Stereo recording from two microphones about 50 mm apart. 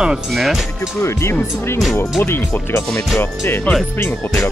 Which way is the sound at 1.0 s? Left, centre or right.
Left.